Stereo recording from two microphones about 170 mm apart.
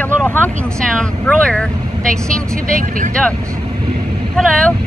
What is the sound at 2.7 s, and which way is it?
Speech, 50° right (ahead or behind).